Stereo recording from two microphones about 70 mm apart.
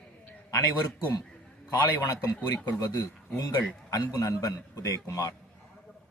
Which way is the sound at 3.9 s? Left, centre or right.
Left.